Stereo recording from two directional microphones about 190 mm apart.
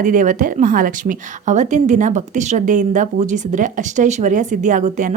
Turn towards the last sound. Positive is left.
turn(degrees=-40)  # may be behind; listen again after turning